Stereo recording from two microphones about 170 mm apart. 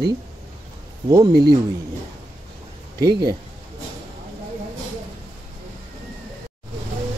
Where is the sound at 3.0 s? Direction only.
25° right (ahead or behind).